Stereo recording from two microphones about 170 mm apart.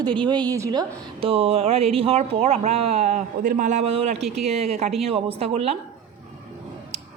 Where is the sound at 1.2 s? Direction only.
35° right (ahead or behind).